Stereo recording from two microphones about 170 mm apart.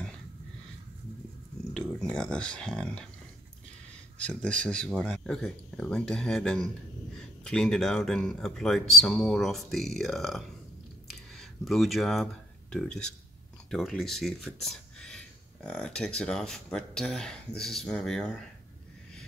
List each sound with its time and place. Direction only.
1.7 s speech: 5° left (ahead or behind)
4.3 s speech: 5° left (ahead or behind)
11.1 s a sound: centre (ahead or behind)
13.7 s speech: centre (ahead or behind)